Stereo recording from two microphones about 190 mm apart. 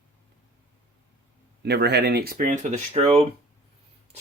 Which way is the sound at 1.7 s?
60° right (ahead or behind).